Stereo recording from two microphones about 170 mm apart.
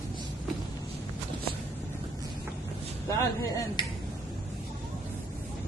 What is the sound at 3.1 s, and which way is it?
Speech, 20° left (ahead or behind).